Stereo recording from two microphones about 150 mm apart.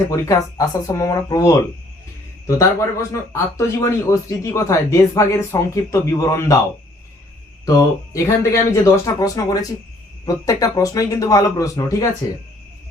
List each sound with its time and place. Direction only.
0.1 s speech: 20° left (ahead or behind)
7.6 s speech: 20° left (ahead or behind)